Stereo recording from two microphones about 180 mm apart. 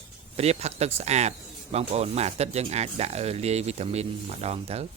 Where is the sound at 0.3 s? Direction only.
35° right (ahead or behind).